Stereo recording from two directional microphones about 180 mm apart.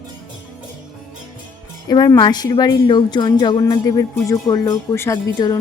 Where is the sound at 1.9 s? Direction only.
20° left (ahead or behind).